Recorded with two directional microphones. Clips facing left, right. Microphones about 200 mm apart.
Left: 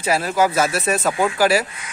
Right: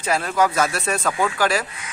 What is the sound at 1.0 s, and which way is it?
Speech, 25° left (ahead or behind).